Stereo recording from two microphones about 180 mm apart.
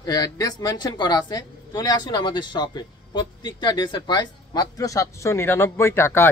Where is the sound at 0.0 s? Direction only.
20° left (ahead or behind).